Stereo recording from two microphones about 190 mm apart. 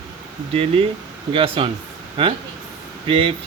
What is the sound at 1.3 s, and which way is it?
Speech, 30° right (ahead or behind).